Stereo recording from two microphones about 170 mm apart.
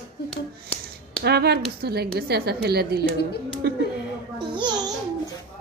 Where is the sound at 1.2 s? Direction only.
70° right (ahead or behind).